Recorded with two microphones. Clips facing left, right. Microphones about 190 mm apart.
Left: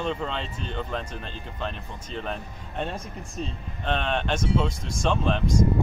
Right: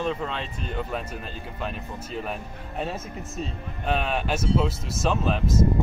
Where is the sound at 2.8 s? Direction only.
5° right (ahead or behind).